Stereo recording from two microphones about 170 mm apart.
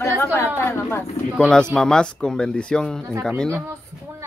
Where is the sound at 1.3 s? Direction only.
5° left (ahead or behind).